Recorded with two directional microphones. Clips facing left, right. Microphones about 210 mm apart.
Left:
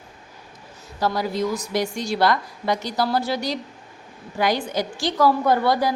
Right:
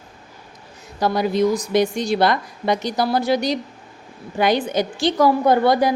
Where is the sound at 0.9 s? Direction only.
20° right (ahead or behind).